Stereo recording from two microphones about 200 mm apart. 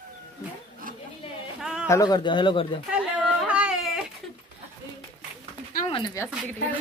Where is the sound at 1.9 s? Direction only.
20° left (ahead or behind).